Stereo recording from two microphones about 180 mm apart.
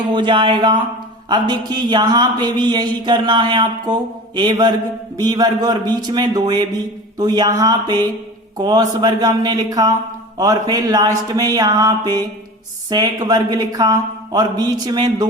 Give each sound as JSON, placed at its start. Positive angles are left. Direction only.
{"t": 0.1, "sound": "a man's voice", "side_deg": -25}